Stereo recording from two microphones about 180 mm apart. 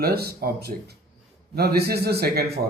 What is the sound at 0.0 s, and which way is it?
Speech, 60° right (ahead or behind).